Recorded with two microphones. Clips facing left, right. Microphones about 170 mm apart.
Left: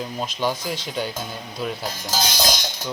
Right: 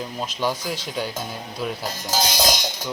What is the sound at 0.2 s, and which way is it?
Speech, centre (ahead or behind).